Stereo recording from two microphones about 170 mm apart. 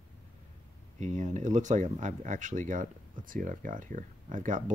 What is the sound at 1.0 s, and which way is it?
Speech, 45° right (ahead or behind).